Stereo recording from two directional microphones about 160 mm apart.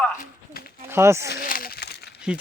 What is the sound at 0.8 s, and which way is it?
Speech, 15° right (ahead or behind).